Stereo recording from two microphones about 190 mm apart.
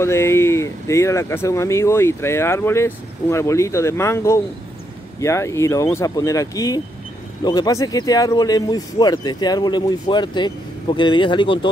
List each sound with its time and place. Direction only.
0.0 s speech: 15° left (ahead or behind)